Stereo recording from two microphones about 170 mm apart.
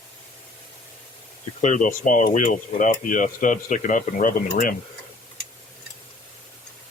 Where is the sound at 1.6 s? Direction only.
50° left (ahead or behind).